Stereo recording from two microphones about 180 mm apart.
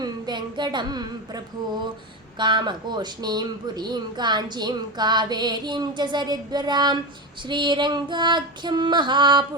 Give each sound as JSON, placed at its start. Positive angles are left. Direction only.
{"t": 0.0, "sound": "child singing", "side_deg": -25}
{"t": 2.4, "sound": "speech", "side_deg": -25}